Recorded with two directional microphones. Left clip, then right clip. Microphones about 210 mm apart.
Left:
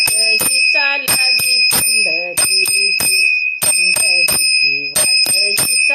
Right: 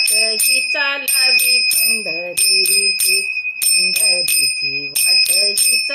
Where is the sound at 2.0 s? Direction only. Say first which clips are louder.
Left 2 dB; 10° right (ahead or behind).